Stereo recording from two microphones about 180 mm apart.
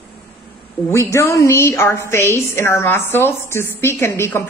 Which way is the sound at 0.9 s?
15° left (ahead or behind).